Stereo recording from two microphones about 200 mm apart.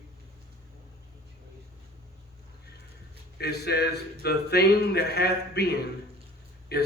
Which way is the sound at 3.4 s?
55° left (ahead or behind).